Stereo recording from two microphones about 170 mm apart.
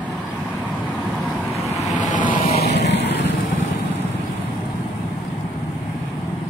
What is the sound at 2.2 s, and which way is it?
Vehicle, 30° left (ahead or behind).